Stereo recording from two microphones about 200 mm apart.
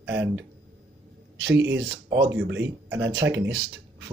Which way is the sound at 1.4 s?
60° right (ahead or behind).